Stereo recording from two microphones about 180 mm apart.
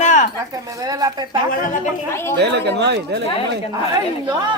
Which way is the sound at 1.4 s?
45° left (ahead or behind).